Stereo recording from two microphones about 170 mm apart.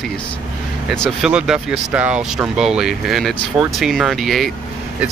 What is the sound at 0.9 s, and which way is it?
Speech, 5° left (ahead or behind).